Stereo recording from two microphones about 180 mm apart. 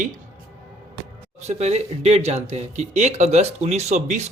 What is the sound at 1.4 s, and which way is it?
A man's voice, 40° right (ahead or behind).